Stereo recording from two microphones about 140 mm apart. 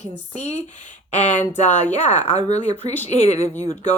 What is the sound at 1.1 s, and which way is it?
Speech, 55° left (ahead or behind).